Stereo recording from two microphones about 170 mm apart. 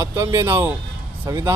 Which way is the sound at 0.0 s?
20° right (ahead or behind).